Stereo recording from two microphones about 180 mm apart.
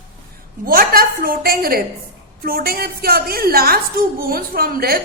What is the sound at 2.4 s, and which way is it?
A woman's voice, 55° right (ahead or behind).